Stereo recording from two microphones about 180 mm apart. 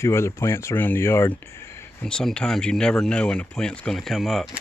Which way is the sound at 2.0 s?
5° left (ahead or behind).